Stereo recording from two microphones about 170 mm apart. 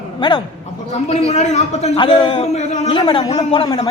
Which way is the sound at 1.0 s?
40° left (ahead or behind).